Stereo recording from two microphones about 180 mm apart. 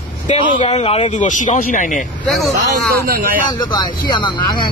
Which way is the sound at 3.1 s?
50° right (ahead or behind).